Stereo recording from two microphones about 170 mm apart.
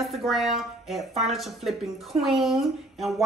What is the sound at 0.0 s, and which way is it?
A woman's voice, centre (ahead or behind).